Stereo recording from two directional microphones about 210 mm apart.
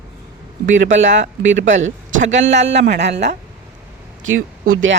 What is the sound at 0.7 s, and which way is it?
Speech, 65° right (ahead or behind).